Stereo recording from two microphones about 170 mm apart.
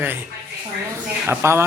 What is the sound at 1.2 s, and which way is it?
Speech, 15° right (ahead or behind).